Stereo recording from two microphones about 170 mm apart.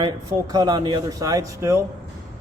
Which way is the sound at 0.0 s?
25° right (ahead or behind).